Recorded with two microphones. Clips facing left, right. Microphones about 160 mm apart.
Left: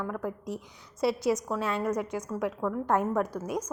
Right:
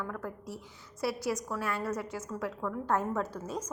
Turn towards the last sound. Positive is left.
turn(degrees=15)  # may be behind; listen again after turning